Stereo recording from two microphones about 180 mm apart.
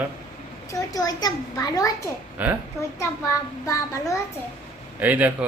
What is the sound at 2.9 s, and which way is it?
A child's voice, 15° left (ahead or behind).